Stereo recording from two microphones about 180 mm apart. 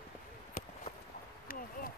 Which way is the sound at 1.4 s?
50° left (ahead or behind).